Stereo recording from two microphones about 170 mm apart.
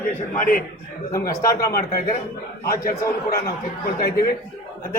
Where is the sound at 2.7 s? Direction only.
15° left (ahead or behind).